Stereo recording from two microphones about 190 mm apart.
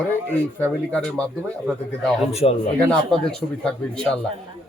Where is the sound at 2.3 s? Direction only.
35° left (ahead or behind).